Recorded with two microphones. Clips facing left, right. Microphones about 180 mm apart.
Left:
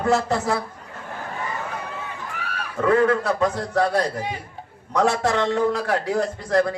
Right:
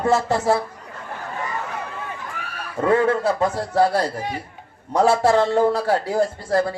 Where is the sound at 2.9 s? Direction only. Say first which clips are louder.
Even; 30° right (ahead or behind).